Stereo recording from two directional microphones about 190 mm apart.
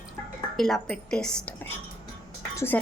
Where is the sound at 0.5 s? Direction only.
Centre (ahead or behind).